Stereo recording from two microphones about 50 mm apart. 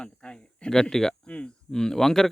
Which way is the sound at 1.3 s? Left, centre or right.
Left.